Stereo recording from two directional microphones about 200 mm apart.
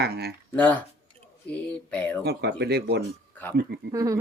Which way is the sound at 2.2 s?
55° right (ahead or behind).